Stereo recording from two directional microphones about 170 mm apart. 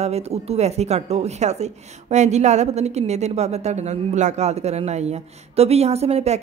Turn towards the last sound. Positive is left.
turn(degrees=-40)  # may be behind; listen again after turning